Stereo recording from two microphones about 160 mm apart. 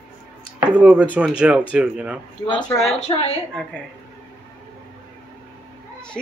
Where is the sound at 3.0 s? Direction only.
40° left (ahead or behind).